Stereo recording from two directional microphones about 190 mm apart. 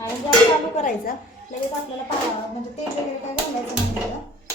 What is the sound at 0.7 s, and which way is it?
Speech, 40° left (ahead or behind).